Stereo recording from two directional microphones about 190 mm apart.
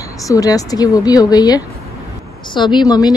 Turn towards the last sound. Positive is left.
turn(degrees=20)  # may be behind; listen again after turning